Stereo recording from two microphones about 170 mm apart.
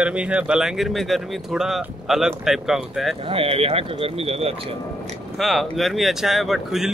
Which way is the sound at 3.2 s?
35° right (ahead or behind).